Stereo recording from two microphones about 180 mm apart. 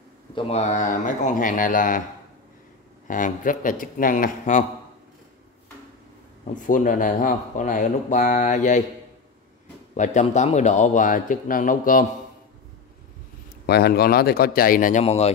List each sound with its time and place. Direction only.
0.3 s speech: 30° left (ahead or behind); by 2.0 s 50° left (ahead or behind)
3.1 s speech: 45° left (ahead or behind)
6.5 s speech: 45° left (ahead or behind)
9.9 s speech: 40° left (ahead or behind)
13.7 s speech: 60° left (ahead or behind); by 15.3 s 35° left (ahead or behind)